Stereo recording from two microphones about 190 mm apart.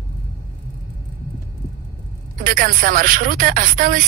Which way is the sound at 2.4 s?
50° right (ahead or behind).